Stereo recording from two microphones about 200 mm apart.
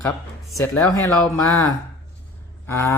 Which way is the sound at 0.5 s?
15° left (ahead or behind).